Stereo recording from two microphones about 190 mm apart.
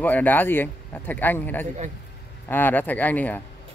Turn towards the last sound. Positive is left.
turn(degrees=10)  # may be behind; listen again after turning